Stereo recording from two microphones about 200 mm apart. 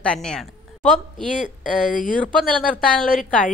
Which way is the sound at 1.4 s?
40° left (ahead or behind).